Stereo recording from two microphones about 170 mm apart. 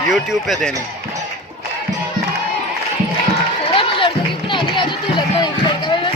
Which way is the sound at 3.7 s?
30° left (ahead or behind).